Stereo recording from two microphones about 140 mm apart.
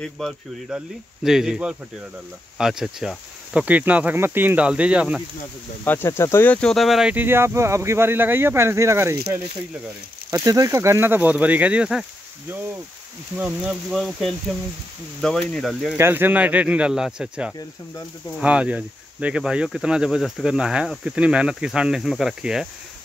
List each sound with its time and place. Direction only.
0.2 s speech: 5° left (ahead or behind)
5.9 s speech: 15° left (ahead or behind); by 9.2 s 20° right (ahead or behind)
10.3 s speech: 25° right (ahead or behind); by 16.0 s centre (ahead or behind)
16.0 s speech: 15° right (ahead or behind)